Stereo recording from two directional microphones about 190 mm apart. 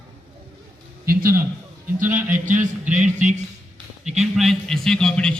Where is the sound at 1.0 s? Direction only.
50° right (ahead or behind).